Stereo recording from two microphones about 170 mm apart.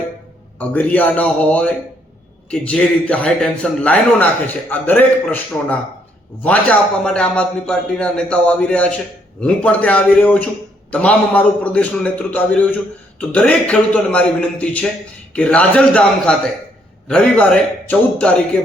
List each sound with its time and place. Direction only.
0.6 s a man's voice: 10° left (ahead or behind)